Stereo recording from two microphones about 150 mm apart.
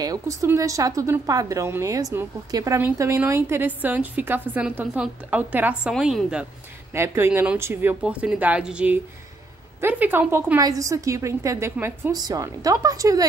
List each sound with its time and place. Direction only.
0.0 s speech: 25° right (ahead or behind); by 6.4 s 5° right (ahead or behind)
6.9 s a woman's voice: 15° right (ahead or behind)
12.1 s a woman's voice: 25° right (ahead or behind)